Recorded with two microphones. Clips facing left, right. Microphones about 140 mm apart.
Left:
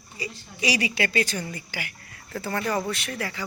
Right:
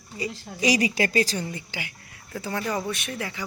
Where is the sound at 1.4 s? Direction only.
20° right (ahead or behind).